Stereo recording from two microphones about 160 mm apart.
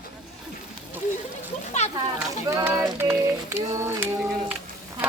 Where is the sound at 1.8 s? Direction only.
40° left (ahead or behind).